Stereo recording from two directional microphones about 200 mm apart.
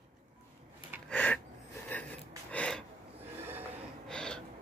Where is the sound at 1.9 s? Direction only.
10° left (ahead or behind).